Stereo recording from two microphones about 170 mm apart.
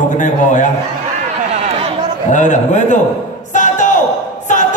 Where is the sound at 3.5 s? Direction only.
45° left (ahead or behind).